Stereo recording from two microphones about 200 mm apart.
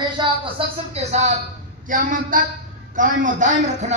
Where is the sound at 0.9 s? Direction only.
35° right (ahead or behind).